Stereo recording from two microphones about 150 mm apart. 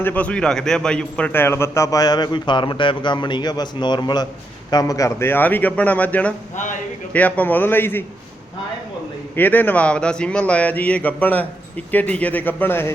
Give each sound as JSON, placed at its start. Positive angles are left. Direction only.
{"t": 0.0, "sound": "a man's voice", "side_deg": 10}
{"t": 9.3, "sound": "a man's voice", "side_deg": 10}